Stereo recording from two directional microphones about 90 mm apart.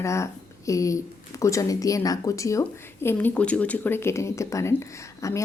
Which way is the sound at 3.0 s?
20° left (ahead or behind).